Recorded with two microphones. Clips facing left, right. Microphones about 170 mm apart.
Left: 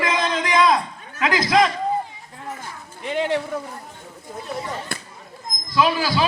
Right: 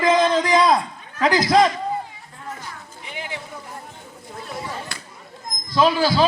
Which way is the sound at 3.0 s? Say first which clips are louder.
Left 12 dB; 65° left (ahead or behind).